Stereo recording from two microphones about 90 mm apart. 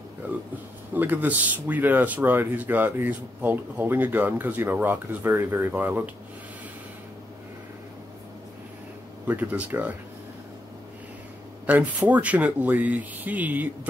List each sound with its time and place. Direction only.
0.9 s speech: 20° right (ahead or behind)
9.3 s speech: 20° right (ahead or behind)
11.6 s speech: 20° right (ahead or behind)